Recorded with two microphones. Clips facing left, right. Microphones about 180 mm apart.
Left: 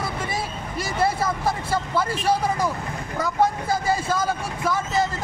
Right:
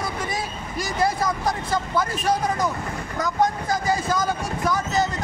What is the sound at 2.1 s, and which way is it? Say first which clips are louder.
Speech: left 1 dB; 30° left (ahead or behind).